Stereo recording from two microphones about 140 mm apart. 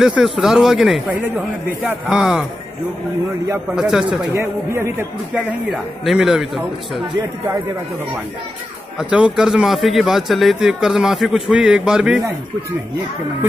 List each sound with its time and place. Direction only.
0.0 s a man's voice: 5° right (ahead or behind)
3.7 s a man's voice: 5° right (ahead or behind)
4.3 s a man's voice: 20° right (ahead or behind)
5.3 s a man's voice: 5° right (ahead or behind)
8.9 s a man's voice: 5° right (ahead or behind)